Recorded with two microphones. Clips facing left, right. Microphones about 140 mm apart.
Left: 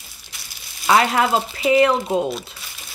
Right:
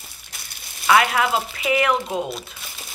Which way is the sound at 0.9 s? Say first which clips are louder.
Left 1 dB; 35° left (ahead or behind).